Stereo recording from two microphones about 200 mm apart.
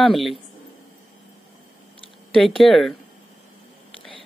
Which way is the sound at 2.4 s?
Centre (ahead or behind).